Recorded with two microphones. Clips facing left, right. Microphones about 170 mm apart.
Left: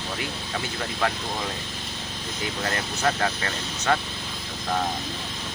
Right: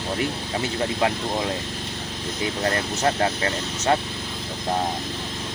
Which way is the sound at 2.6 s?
30° right (ahead or behind).